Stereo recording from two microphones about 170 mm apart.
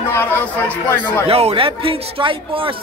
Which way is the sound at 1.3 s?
35° right (ahead or behind).